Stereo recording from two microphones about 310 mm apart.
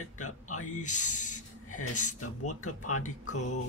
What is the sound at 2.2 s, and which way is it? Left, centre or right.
Speech, left.